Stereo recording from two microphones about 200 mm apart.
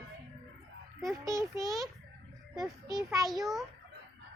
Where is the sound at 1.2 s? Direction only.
15° right (ahead or behind).